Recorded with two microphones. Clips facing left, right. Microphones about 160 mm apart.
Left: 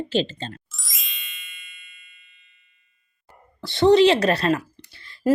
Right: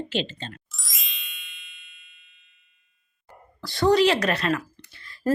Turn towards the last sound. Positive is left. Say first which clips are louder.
# left 1 dB
turn(degrees=30)  # may be behind; listen again after turning